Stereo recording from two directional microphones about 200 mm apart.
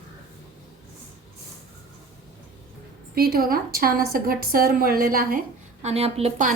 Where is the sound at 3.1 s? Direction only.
50° right (ahead or behind).